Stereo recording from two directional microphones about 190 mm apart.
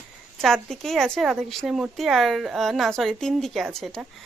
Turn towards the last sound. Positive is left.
turn(degrees=0)  # may be behind; listen again after turning